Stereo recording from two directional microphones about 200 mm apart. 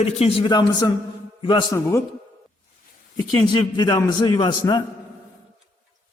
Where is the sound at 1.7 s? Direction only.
15° left (ahead or behind).